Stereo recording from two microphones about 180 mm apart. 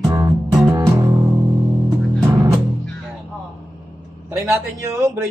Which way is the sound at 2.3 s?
15° right (ahead or behind).